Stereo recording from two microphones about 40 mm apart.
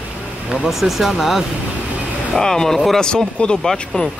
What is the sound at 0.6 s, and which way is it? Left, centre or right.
Speech, centre.